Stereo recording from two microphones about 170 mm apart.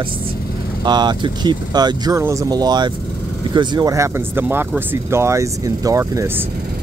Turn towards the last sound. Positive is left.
turn(degrees=-15)  # may be behind; listen again after turning